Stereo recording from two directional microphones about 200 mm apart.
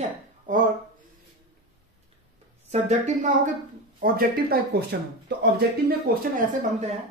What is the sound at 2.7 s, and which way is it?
Speech, 35° right (ahead or behind).